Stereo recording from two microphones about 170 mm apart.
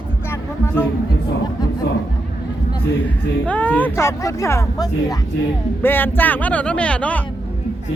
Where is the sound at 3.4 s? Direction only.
10° left (ahead or behind).